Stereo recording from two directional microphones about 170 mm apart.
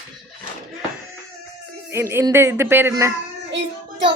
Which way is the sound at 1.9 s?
15° right (ahead or behind).